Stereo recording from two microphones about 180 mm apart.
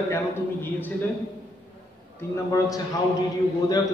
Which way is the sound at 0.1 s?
10° left (ahead or behind).